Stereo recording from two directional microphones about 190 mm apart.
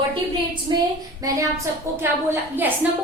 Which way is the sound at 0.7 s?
20° right (ahead or behind).